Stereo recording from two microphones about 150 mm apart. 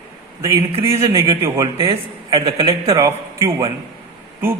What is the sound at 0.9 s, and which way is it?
Speech, 20° right (ahead or behind).